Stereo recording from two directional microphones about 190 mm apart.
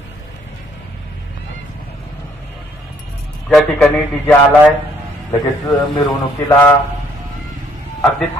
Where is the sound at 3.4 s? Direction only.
Centre (ahead or behind).